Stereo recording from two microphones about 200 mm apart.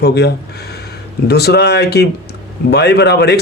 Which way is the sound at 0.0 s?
55° left (ahead or behind).